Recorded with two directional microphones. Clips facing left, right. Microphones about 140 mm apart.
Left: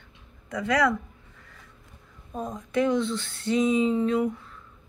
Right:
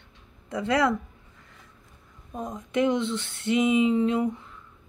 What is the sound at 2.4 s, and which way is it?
A woman's voice, 20° right (ahead or behind).